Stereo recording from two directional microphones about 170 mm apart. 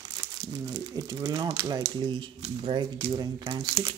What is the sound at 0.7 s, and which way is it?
Speech, 20° right (ahead or behind).